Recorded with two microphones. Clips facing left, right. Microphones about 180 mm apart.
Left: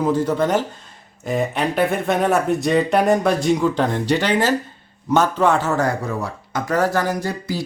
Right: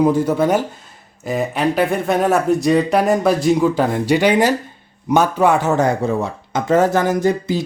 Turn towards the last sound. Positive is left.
turn(degrees=-20)  # may be behind; listen again after turning